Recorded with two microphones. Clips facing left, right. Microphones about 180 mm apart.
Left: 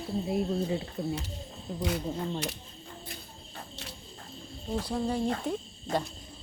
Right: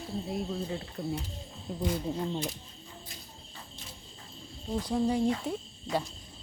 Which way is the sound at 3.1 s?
65° left (ahead or behind).